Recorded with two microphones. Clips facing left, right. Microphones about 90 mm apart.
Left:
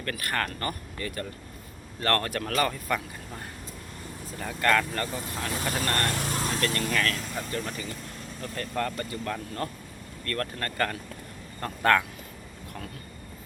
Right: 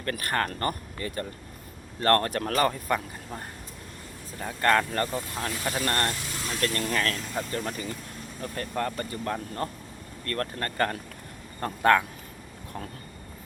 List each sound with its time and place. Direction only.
0.0 s speech: 30° right (ahead or behind)
6.1 s vehicle: 55° left (ahead or behind)
6.7 s speech: 30° right (ahead or behind)
8.7 s speech: 20° right (ahead or behind)